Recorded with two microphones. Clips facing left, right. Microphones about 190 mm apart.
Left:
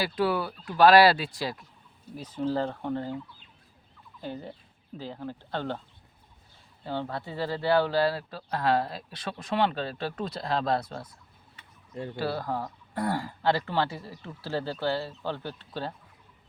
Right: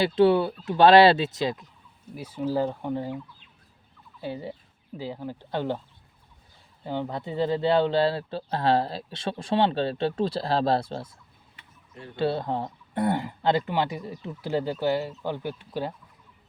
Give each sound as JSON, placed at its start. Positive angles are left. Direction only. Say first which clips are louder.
{"t": 0.0, "sound": "speech", "louder": "right 7 dB", "side_deg": -25}
{"t": 2.1, "sound": "speech", "louder": "right 2 dB", "side_deg": -10}
{"t": 4.2, "sound": "speech", "louder": "right 4 dB", "side_deg": -10}
{"t": 6.8, "sound": "speech", "louder": "right 3 dB", "side_deg": -15}
{"t": 12.1, "sound": "speech", "louder": "right 5 dB", "side_deg": -25}